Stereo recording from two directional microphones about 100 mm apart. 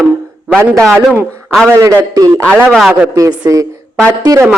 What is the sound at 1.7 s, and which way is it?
Speech, 30° right (ahead or behind).